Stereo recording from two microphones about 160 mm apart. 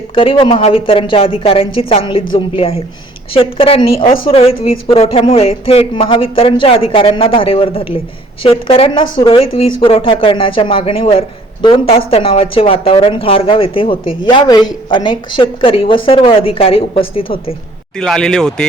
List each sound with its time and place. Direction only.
0.1 s speech: 35° left (ahead or behind)
17.9 s speech: 5° left (ahead or behind)